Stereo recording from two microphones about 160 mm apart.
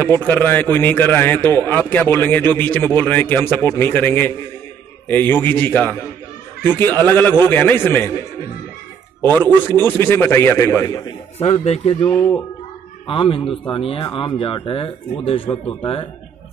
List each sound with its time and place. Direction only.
0.0 s a man's voice: 10° left (ahead or behind)
9.2 s a man's voice: 10° left (ahead or behind)
11.3 s speech: 35° left (ahead or behind)
12.1 s a man's voice: 10° left (ahead or behind)
13.0 s a man's voice: 35° left (ahead or behind)